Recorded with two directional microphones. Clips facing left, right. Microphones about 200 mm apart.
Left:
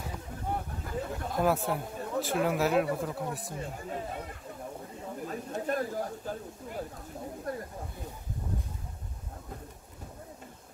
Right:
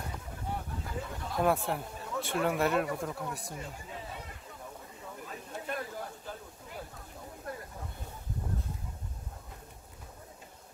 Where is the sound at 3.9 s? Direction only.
50° left (ahead or behind).